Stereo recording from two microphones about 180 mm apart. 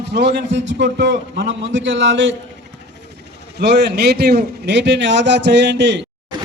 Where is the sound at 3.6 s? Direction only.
70° right (ahead or behind).